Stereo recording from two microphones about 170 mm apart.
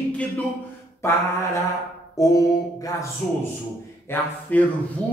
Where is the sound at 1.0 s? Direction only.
15° left (ahead or behind).